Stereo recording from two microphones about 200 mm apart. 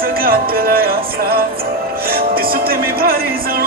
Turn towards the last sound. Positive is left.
turn(degrees=-50)  # may be behind; listen again after turning